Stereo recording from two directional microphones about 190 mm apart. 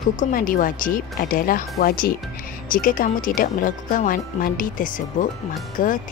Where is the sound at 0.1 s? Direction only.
45° left (ahead or behind).